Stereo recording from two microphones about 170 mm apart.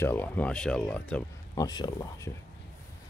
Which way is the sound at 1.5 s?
25° left (ahead or behind).